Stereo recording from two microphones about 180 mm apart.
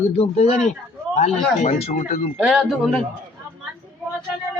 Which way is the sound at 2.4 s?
Centre (ahead or behind).